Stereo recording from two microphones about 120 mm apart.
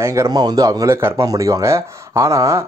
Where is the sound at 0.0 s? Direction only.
25° right (ahead or behind).